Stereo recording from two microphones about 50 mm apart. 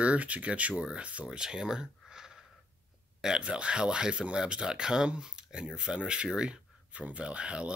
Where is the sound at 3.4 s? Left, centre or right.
Right.